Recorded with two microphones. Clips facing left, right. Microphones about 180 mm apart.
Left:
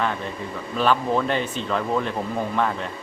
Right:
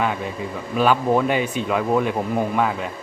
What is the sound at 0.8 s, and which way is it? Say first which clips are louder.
Speech: right 3 dB; 10° right (ahead or behind).